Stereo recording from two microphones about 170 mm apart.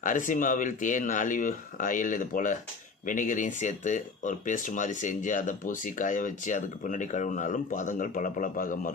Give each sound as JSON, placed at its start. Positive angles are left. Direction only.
{"t": 0.0, "sound": "speech", "side_deg": 50}